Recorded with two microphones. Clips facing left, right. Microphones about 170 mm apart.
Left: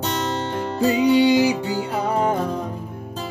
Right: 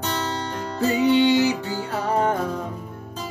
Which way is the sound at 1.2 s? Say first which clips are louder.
Left 2 dB; 10° left (ahead or behind).